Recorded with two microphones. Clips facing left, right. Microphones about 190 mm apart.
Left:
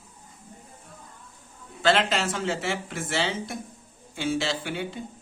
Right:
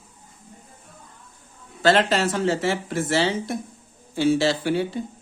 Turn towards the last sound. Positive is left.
turn(degrees=-40)  # may be behind; listen again after turning